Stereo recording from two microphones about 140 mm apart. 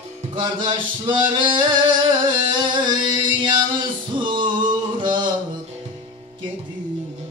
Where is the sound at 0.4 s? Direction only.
35° right (ahead or behind).